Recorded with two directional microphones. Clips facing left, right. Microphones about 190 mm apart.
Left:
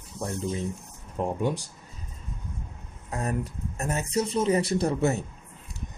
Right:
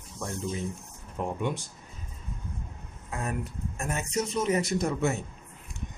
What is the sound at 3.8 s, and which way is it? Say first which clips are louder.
Speech: left 3 dB; 35° left (ahead or behind).